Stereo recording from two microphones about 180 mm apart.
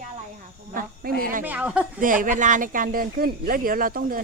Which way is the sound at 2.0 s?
50° right (ahead or behind).